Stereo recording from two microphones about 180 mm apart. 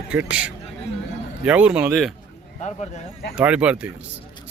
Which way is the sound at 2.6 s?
40° left (ahead or behind).